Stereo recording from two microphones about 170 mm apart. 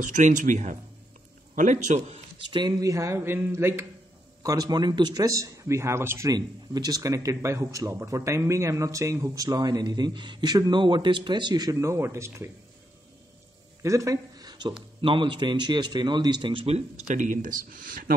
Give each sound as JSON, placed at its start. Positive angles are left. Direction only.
{"t": 0.0, "sound": "speech", "side_deg": -45}
{"t": 2.5, "sound": "a man's voice", "side_deg": -25}
{"t": 13.8, "sound": "a sound", "side_deg": -20}
{"t": 15.0, "sound": "a man's voice", "side_deg": -30}
{"t": 17.1, "sound": "speech", "side_deg": -50}